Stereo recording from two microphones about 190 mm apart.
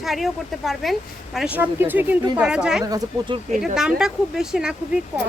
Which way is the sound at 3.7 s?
5° right (ahead or behind).